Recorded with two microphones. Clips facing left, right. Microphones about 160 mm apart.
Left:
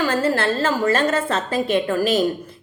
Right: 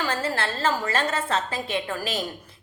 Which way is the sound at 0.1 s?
50° left (ahead or behind).